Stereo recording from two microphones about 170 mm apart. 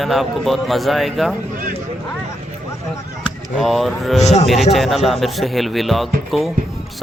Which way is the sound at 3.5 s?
Centre (ahead or behind).